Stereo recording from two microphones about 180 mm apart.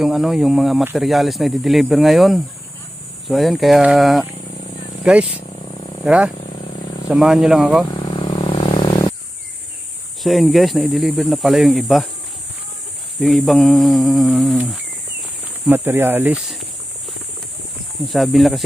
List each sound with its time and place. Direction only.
0.0 s speech: centre (ahead or behind)
5.6 s a sound: 25° left (ahead or behind)
6.1 s speech: 5° right (ahead or behind)
7.9 s vehicle: 25° left (ahead or behind)
10.2 s speech: centre (ahead or behind)
13.1 s speech: centre (ahead or behind)
18.1 s speech: centre (ahead or behind)